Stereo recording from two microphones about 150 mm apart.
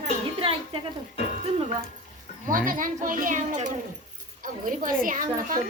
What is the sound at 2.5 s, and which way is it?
Speech, 65° right (ahead or behind).